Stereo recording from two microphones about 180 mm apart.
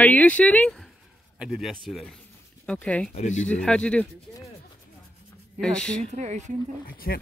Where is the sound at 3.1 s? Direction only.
40° left (ahead or behind).